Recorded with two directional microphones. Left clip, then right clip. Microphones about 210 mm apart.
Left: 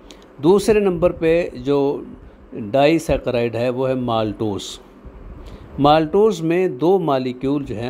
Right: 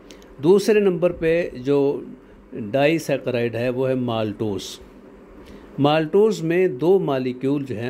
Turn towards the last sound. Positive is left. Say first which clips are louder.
# left 2 dB
turn(degrees=0)  # may be behind; listen again after turning